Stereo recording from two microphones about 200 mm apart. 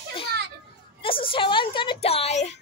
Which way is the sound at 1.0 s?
25° left (ahead or behind).